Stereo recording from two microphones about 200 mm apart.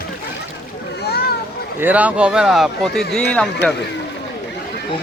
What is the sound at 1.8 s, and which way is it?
Speech, 5° right (ahead or behind).